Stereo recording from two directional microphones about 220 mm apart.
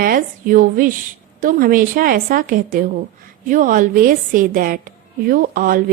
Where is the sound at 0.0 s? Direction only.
40° right (ahead or behind).